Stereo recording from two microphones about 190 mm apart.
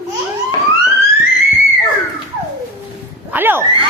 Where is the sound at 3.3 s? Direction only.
10° right (ahead or behind).